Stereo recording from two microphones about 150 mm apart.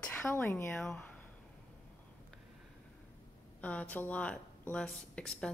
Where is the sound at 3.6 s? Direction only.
10° left (ahead or behind).